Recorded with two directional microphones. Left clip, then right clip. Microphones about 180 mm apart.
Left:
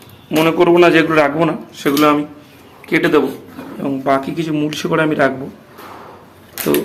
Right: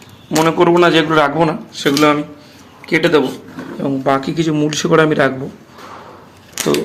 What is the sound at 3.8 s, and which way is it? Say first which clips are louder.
A man's voice: even; 15° right (ahead or behind).